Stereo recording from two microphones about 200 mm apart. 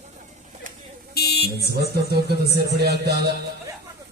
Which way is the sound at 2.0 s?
55° right (ahead or behind).